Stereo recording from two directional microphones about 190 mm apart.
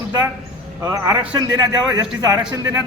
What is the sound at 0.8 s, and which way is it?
A man's voice, 15° right (ahead or behind).